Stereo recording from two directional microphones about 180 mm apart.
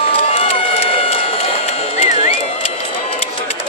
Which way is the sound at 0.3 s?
35° left (ahead or behind).